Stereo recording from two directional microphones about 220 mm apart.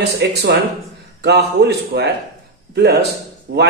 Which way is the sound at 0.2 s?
50° right (ahead or behind).